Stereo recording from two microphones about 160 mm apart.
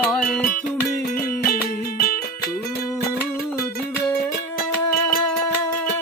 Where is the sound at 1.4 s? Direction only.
65° left (ahead or behind).